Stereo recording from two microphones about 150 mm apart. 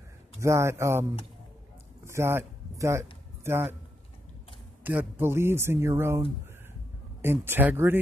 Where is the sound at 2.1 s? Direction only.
15° right (ahead or behind).